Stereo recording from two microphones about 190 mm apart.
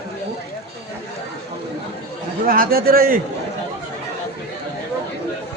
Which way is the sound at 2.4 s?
50° right (ahead or behind).